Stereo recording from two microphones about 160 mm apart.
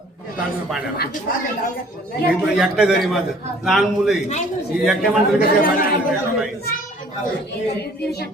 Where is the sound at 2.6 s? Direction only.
5° right (ahead or behind).